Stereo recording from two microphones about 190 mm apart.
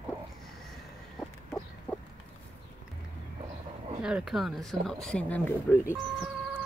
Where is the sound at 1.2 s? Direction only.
5° left (ahead or behind).